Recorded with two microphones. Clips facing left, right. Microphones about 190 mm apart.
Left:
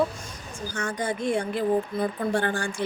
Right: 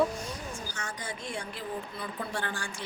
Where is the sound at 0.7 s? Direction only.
55° left (ahead or behind).